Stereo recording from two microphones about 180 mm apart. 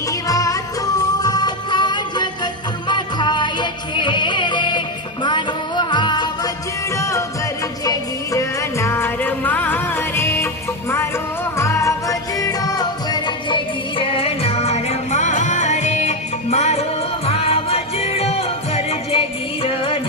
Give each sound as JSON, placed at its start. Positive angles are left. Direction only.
{"t": 0.3, "sound": "music", "side_deg": 20}